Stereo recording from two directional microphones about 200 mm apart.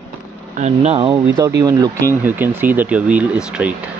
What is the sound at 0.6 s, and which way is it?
Speech, 35° right (ahead or behind).